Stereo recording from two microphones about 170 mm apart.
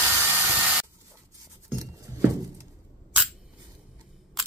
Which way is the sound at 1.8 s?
20° right (ahead or behind).